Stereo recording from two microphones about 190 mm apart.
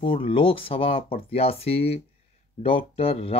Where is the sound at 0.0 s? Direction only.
30° left (ahead or behind).